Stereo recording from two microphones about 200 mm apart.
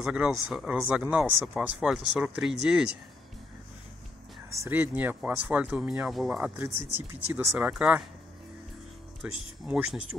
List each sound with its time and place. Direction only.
0.0 s speech: 5° right (ahead or behind)
4.6 s speech: 10° right (ahead or behind)
9.2 s speech: 5° right (ahead or behind)